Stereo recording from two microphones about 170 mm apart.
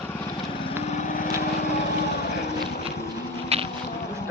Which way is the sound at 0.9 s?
55° left (ahead or behind).